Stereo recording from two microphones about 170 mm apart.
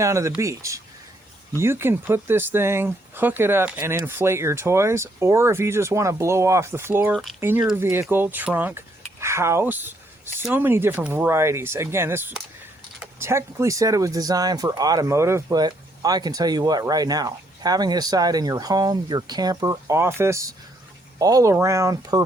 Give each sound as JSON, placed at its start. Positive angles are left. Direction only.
{"t": 0.0, "sound": "speech", "side_deg": -15}
{"t": 7.1, "sound": "speech", "side_deg": 0}
{"t": 7.3, "sound": "speech", "side_deg": -15}
{"t": 9.2, "sound": "a sound", "side_deg": -15}
{"t": 10.5, "sound": "speech", "side_deg": -10}